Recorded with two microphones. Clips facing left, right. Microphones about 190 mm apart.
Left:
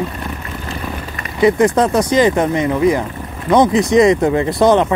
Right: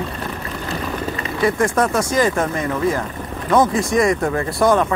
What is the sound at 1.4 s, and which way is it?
Speech, 20° left (ahead or behind).